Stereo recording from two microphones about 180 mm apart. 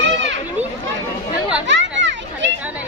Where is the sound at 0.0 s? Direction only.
85° right.